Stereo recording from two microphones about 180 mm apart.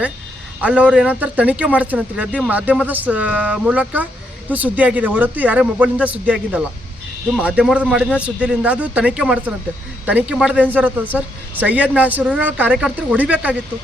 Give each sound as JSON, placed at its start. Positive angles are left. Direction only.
{"t": 0.6, "sound": "a man's voice", "side_deg": -5}